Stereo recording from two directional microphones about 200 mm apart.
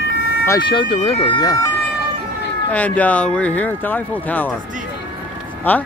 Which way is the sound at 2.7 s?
5° left (ahead or behind).